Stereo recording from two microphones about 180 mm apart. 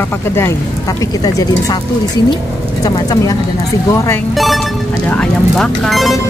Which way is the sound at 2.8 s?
20° left (ahead or behind).